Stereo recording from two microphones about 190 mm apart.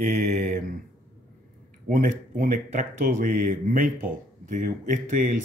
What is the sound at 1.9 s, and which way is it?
Speech, 45° right (ahead or behind).